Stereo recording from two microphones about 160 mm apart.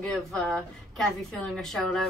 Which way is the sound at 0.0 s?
5° left (ahead or behind).